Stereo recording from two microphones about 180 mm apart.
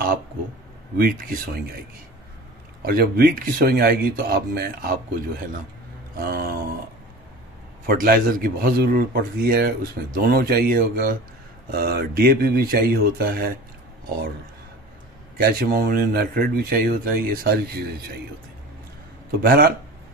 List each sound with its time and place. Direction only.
0.9 s speech: 55° right (ahead or behind)
2.8 s speech: 55° right (ahead or behind)
7.8 s speech: 50° right (ahead or behind)
15.3 s speech: 55° right (ahead or behind)
19.4 s speech: 55° right (ahead or behind)